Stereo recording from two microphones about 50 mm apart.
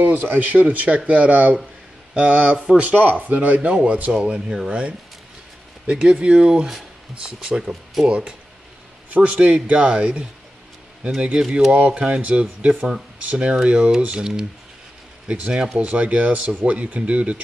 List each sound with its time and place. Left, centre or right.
0.0 s speech: right
4.1 s speech: centre
5.9 s speech: centre
9.1 s speech: right
13.5 s speech: centre